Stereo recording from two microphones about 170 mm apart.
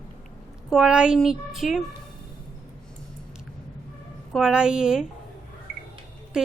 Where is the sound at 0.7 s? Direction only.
Centre (ahead or behind).